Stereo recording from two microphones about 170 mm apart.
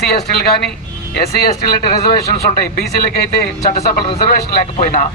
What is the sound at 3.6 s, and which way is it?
A man's voice, 50° left (ahead or behind).